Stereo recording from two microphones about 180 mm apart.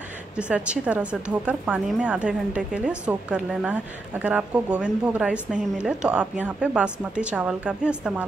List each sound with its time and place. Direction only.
0.4 s speech: 5° right (ahead or behind)